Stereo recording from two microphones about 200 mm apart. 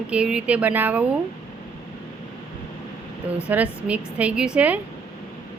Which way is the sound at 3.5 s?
5° right (ahead or behind).